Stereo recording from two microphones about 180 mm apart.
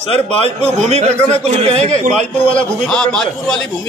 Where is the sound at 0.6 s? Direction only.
35° right (ahead or behind).